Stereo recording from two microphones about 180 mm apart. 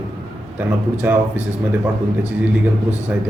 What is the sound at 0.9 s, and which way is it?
Speech, 10° right (ahead or behind).